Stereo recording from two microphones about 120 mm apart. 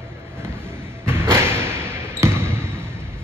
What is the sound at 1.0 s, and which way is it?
Basketball bounce, 20° right (ahead or behind).